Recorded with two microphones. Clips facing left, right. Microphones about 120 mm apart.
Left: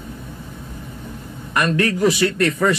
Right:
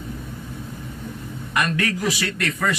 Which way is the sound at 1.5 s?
30° left (ahead or behind).